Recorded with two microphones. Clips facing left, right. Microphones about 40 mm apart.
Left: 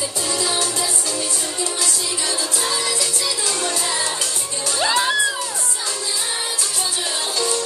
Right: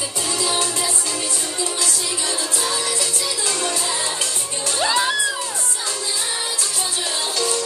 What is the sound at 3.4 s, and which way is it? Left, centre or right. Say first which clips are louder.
Music: right 2 dB; right.